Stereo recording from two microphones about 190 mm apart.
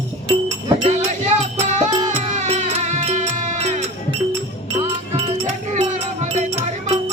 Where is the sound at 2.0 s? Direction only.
35° right (ahead or behind).